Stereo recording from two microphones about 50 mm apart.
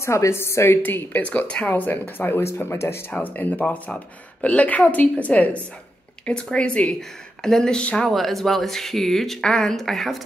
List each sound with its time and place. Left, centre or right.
0.0 s a woman's voice: left
0.8 s speech: left
1.2 s speech: left
2.4 s a woman's voice: left
3.1 s speech: left
7.0 s speech: centre
8.1 s speech: centre